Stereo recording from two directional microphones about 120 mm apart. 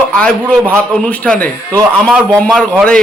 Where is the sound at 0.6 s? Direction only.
20° right (ahead or behind).